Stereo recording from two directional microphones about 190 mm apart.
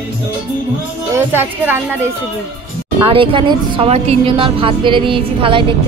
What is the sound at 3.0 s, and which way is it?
A woman's voice, 25° right (ahead or behind).